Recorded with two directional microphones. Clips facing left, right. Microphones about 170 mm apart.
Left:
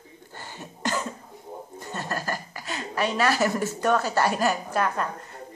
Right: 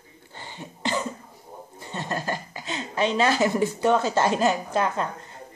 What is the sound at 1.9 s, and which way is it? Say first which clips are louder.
A woman's voice: right 2 dB; 20° right (ahead or behind).